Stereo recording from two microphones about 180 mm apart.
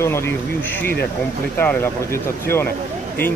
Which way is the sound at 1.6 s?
10° left (ahead or behind).